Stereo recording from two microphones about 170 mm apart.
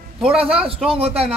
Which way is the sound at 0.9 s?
35° right (ahead or behind).